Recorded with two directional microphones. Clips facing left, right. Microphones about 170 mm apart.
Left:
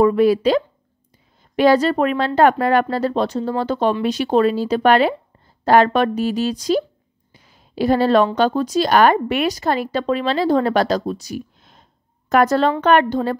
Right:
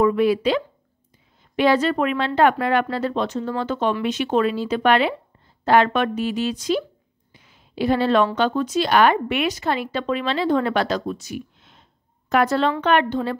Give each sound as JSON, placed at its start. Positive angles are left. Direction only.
{"t": 0.0, "sound": "speech", "side_deg": 40}
{"t": 7.3, "sound": "a sound", "side_deg": 40}
{"t": 8.4, "sound": "speech", "side_deg": 35}